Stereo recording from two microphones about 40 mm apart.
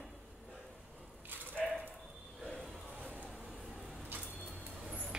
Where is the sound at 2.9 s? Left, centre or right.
Right.